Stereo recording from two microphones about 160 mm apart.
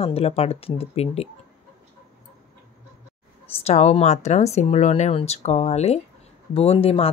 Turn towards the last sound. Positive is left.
turn(degrees=35)  # may be behind; listen again after turning